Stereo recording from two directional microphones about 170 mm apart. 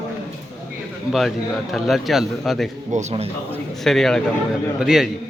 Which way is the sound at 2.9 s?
40° right (ahead or behind).